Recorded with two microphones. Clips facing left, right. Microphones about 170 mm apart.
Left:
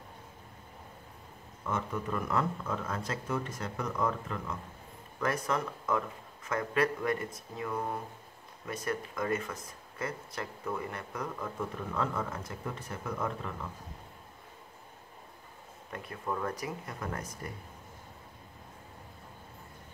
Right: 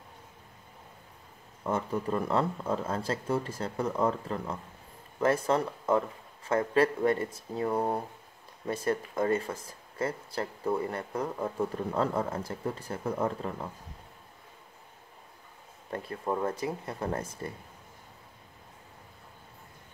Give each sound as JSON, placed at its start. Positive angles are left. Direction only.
{"t": 1.6, "sound": "speech", "side_deg": -30}
{"t": 15.9, "sound": "speech", "side_deg": -30}